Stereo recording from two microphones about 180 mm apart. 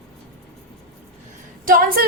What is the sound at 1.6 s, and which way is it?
Speech, 50° right (ahead or behind).